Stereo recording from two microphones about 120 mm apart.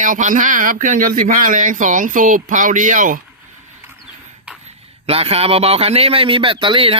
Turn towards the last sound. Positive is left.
turn(degrees=-45)  # may be behind; listen again after turning